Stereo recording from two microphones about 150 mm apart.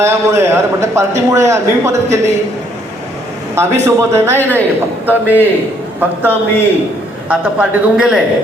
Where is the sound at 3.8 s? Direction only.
20° right (ahead or behind).